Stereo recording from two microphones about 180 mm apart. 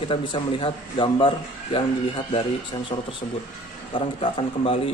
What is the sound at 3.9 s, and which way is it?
Speech, 25° left (ahead or behind).